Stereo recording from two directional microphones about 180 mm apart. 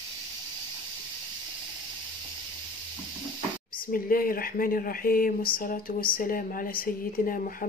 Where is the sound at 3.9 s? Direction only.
50° left (ahead or behind).